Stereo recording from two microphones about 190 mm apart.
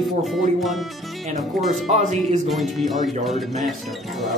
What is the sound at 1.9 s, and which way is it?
Music, 35° right (ahead or behind).